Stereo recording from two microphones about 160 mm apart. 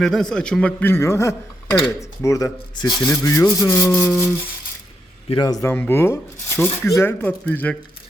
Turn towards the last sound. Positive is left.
turn(degrees=10)  # may be behind; listen again after turning